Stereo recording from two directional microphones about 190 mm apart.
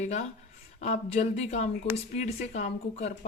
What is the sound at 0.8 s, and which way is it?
Speech, 35° left (ahead or behind).